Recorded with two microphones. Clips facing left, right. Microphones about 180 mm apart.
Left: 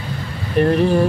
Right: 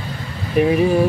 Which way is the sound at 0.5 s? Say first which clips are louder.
Even; 5° right (ahead or behind).